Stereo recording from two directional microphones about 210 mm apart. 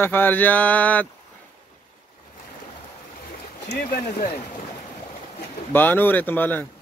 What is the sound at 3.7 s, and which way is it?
Speech, 45° left (ahead or behind).